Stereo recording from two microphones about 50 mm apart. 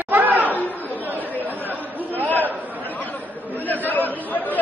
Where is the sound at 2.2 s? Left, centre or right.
Left.